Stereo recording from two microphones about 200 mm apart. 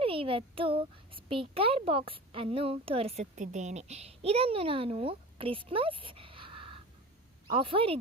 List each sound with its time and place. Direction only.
0.0 s a child's voice: 25° right (ahead or behind)